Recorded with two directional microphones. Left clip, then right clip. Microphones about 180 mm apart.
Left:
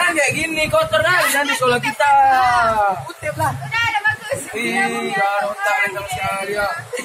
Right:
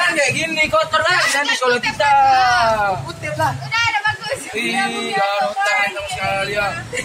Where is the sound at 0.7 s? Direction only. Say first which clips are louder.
Left 2 dB; 15° left (ahead or behind).